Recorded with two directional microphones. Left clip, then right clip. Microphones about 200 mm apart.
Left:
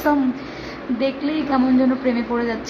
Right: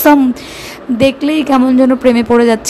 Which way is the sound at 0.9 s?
45° right (ahead or behind).